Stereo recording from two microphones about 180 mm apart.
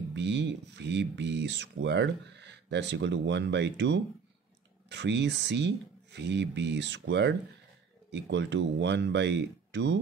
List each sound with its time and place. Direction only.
0.1 s speech: 75° right (ahead or behind)